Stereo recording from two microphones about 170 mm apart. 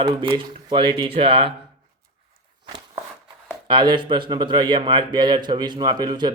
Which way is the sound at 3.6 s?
25° right (ahead or behind).